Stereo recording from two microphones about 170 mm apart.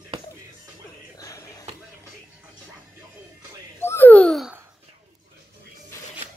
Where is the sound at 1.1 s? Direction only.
20° left (ahead or behind).